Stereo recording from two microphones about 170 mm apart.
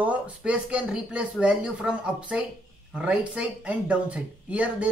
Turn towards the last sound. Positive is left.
turn(degrees=-10)  # may be behind; listen again after turning